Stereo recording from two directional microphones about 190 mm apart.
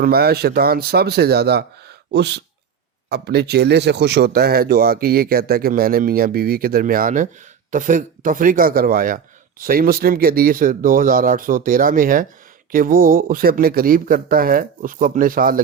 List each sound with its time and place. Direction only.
0.0 s speech: 55° right (ahead or behind)